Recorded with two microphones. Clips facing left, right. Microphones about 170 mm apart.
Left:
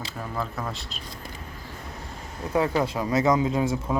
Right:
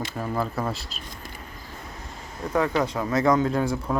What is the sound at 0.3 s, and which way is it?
Speech, 35° right (ahead or behind).